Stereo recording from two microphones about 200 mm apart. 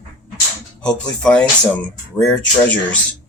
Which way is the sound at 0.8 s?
5° left (ahead or behind).